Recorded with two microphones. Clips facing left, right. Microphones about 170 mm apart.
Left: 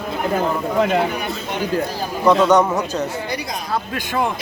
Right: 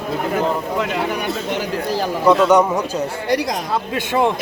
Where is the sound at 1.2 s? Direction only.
80° right.